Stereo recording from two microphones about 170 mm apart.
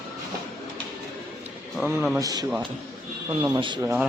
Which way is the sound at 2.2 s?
20° right (ahead or behind).